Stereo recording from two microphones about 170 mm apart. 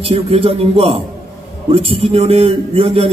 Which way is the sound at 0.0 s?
35° right (ahead or behind).